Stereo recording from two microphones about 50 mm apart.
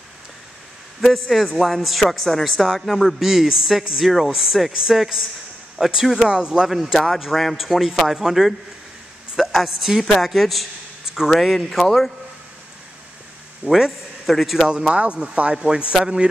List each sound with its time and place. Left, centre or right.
1.6 s a man's voice: centre
6.2 s a man's voice: centre
6.7 s a man's voice: centre
8.2 s a man's voice: centre
13.7 s a man's voice: centre
14.7 s a man's voice: centre